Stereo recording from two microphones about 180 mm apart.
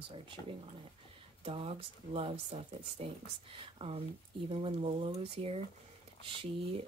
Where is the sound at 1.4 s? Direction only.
30° right (ahead or behind).